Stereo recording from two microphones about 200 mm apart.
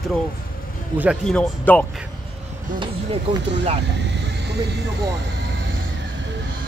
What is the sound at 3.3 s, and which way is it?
Speech, 25° right (ahead or behind).